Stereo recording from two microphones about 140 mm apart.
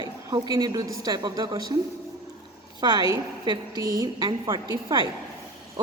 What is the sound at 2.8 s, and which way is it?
A woman's voice, 30° right (ahead or behind).